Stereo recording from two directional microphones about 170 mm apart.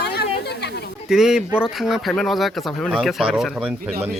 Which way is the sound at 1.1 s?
5° right (ahead or behind).